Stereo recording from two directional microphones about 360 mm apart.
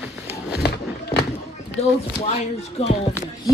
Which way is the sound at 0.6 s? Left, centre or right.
Left.